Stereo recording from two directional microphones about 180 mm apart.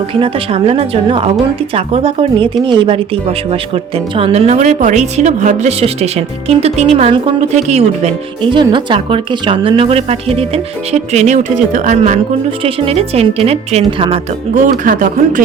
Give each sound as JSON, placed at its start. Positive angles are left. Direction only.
{"t": 0.1, "sound": "speech", "side_deg": -30}
{"t": 14.6, "sound": "speech", "side_deg": -45}